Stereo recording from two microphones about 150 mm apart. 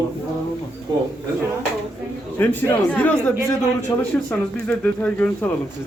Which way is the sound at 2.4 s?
15° left (ahead or behind).